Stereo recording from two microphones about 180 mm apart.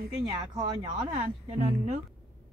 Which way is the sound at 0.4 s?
25° right (ahead or behind).